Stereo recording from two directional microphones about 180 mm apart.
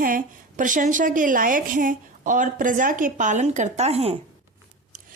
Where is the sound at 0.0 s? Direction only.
50° right (ahead or behind).